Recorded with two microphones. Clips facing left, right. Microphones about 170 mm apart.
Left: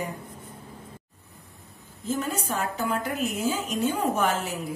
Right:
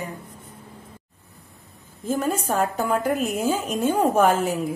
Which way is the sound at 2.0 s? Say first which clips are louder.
Right 5 dB; 50° right (ahead or behind).